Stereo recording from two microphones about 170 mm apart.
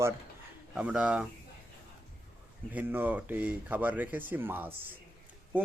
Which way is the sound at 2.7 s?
10° right (ahead or behind).